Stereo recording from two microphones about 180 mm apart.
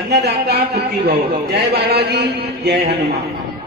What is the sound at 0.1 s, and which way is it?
A man's voice, 65° right (ahead or behind).